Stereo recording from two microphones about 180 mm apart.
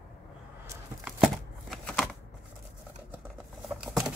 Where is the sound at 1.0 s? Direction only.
Centre (ahead or behind).